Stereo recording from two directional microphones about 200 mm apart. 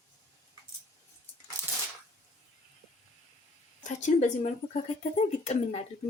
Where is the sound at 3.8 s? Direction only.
35° left (ahead or behind).